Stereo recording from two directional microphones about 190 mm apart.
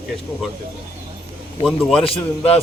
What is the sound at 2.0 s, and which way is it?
Speech, 30° left (ahead or behind).